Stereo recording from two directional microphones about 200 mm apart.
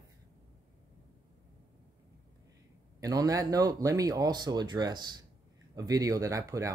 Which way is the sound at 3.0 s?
15° right (ahead or behind).